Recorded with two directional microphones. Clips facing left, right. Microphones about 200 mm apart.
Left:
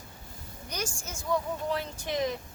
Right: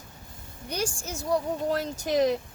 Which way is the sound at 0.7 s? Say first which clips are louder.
Right 6 dB; 30° right (ahead or behind).